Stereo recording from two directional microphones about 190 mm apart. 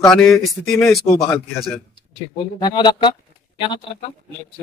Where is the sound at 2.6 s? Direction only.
20° left (ahead or behind).